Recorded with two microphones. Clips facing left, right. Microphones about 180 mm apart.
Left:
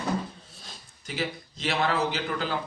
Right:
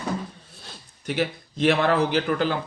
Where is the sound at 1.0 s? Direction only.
60° right (ahead or behind).